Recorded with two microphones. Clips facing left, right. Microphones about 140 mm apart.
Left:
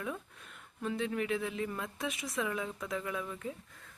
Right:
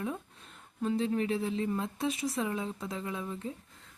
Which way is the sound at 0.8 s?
30° right (ahead or behind).